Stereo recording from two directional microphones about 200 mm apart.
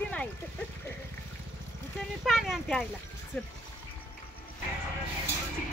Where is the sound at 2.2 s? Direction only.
Centre (ahead or behind).